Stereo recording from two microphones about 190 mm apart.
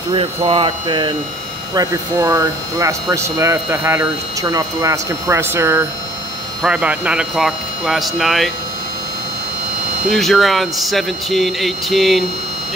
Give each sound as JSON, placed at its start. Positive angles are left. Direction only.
{"t": 0.1, "sound": "speech", "side_deg": -25}
{"t": 10.0, "sound": "speech", "side_deg": 0}